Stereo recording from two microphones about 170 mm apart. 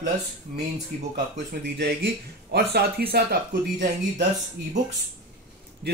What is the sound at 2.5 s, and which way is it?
Speech, 70° right (ahead or behind).